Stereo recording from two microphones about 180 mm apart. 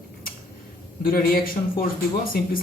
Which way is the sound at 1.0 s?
55° left (ahead or behind).